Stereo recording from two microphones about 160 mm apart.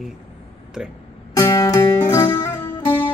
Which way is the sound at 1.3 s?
20° left (ahead or behind).